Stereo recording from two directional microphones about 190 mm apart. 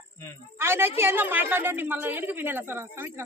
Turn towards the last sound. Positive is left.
turn(degrees=-10)  # may be behind; listen again after turning